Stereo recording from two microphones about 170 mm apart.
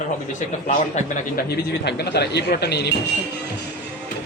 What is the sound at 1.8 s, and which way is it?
Speech, 80° left.